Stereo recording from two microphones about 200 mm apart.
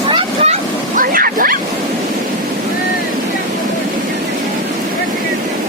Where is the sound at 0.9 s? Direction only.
45° right (ahead or behind).